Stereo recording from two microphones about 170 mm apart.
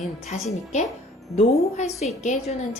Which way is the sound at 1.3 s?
40° left (ahead or behind).